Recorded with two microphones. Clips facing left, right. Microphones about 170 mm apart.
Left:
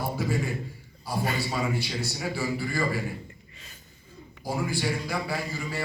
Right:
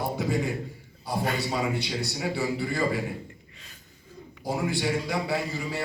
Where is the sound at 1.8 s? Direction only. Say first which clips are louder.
Right 1 dB; 20° right (ahead or behind).